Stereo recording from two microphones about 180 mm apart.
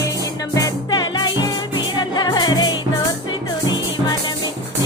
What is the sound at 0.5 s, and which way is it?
Music, 20° left (ahead or behind).